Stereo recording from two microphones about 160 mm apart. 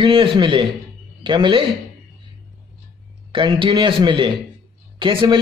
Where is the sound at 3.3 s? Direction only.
30° right (ahead or behind).